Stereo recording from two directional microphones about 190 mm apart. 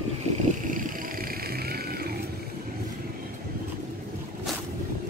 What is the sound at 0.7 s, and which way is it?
Vehicle, 45° right (ahead or behind).